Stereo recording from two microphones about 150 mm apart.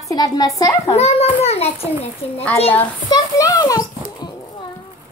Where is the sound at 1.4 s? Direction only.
45° left (ahead or behind).